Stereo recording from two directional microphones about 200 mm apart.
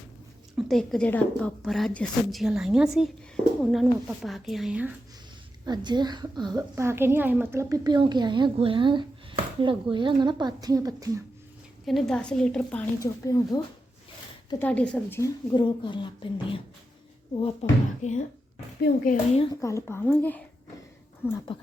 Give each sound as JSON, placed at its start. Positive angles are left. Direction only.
{"t": 0.5, "sound": "a woman's voice", "side_deg": 0}
{"t": 5.6, "sound": "a woman's voice", "side_deg": -20}
{"t": 11.9, "sound": "a woman's voice", "side_deg": 0}
{"t": 14.6, "sound": "speech", "side_deg": 5}
{"t": 15.5, "sound": "speech", "side_deg": 25}
{"t": 18.9, "sound": "speech", "side_deg": 55}
{"t": 19.6, "sound": "speech", "side_deg": 15}